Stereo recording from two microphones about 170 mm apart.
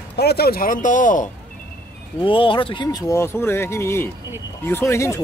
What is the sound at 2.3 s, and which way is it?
Speech, 30° left (ahead or behind).